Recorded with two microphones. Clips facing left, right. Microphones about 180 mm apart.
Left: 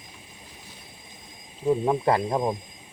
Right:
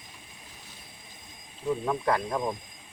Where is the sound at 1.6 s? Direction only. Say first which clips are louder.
Left 5 dB; 30° left (ahead or behind).